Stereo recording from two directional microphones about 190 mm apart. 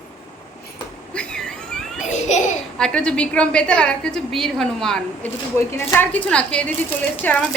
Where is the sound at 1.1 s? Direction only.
5° left (ahead or behind).